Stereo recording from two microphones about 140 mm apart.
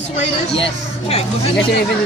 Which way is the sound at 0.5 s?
45° left (ahead or behind).